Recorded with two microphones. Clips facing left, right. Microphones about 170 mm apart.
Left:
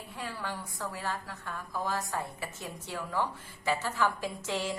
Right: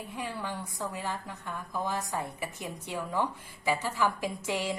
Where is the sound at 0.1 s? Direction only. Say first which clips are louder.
Right 1 dB; 15° right (ahead or behind).